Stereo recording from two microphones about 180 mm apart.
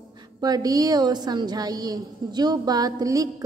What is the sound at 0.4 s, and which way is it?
A woman's voice, 20° right (ahead or behind).